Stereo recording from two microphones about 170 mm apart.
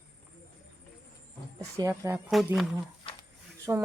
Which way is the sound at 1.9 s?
10° right (ahead or behind).